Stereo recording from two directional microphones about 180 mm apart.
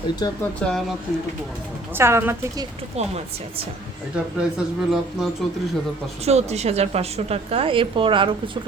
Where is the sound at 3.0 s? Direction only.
35° right (ahead or behind).